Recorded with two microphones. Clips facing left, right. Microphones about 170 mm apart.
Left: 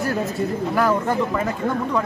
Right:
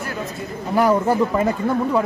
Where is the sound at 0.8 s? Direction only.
15° right (ahead or behind).